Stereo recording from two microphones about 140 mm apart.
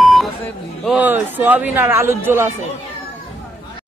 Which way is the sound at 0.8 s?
10° right (ahead or behind).